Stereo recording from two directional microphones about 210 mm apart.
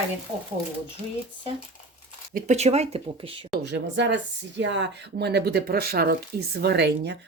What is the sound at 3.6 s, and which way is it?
Speech, 55° right (ahead or behind).